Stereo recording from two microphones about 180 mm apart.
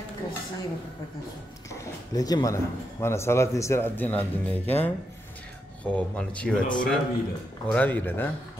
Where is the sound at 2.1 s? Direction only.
20° left (ahead or behind).